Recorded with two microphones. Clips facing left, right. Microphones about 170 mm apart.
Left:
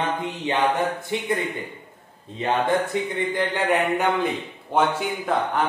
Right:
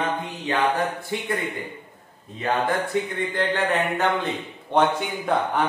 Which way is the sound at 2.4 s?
25° left (ahead or behind).